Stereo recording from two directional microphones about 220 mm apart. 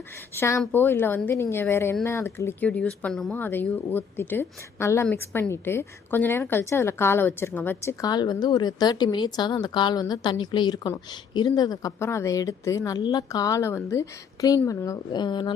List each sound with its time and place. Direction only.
0.3 s speech: 10° left (ahead or behind)